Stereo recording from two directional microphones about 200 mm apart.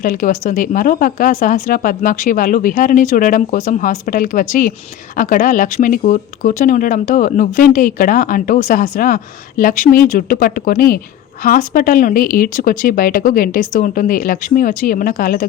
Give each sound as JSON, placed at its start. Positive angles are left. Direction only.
{"t": 0.0, "sound": "speech", "side_deg": 40}